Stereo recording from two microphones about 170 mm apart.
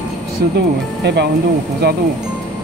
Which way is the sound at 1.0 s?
80° right.